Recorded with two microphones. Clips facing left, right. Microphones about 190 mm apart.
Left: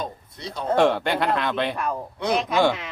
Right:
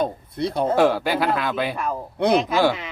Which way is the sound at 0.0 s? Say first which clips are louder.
Right 9 dB; 60° right (ahead or behind).